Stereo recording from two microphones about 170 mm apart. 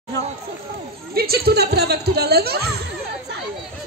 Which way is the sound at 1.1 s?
65° right (ahead or behind).